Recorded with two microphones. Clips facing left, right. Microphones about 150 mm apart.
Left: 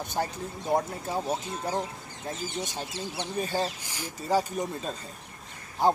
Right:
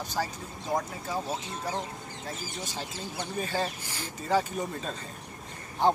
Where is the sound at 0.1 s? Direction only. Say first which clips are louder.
Left 3 dB; 25° left (ahead or behind).